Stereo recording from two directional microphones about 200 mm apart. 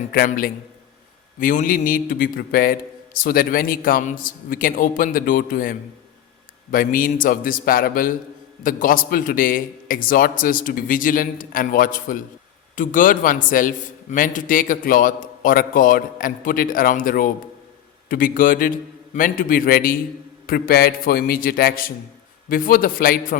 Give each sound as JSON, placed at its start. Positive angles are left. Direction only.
{"t": 0.1, "sound": "a man's voice", "side_deg": 45}